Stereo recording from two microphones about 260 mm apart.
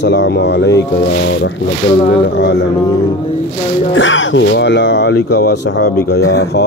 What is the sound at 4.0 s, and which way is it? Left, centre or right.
Speech, left.